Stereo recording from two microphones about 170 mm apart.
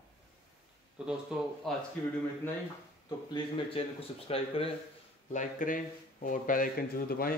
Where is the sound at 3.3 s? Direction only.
30° left (ahead or behind).